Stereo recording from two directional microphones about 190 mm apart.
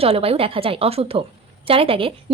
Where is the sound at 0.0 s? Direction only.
30° right (ahead or behind).